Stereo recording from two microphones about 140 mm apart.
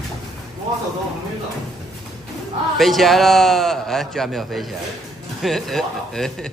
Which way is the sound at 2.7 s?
Centre (ahead or behind).